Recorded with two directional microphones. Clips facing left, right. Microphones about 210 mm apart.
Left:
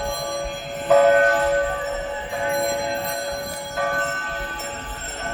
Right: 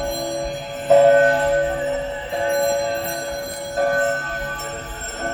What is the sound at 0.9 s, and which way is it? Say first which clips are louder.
Music: right 3 dB; 25° right (ahead or behind).